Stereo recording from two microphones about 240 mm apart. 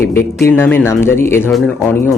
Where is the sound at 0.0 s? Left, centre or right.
Centre.